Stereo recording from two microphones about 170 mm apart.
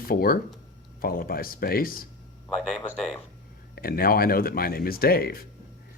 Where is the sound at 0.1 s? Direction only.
60° left (ahead or behind).